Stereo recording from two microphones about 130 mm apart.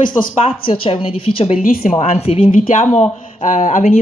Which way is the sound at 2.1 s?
50° left (ahead or behind).